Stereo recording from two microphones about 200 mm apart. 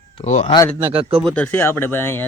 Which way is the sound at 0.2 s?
35° left (ahead or behind).